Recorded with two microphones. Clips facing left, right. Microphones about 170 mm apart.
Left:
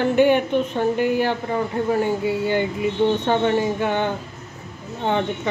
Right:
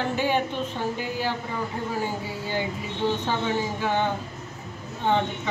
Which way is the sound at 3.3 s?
60° left (ahead or behind).